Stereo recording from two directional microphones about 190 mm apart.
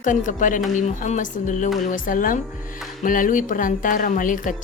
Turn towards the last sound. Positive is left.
turn(degrees=45)  # may be behind; listen again after turning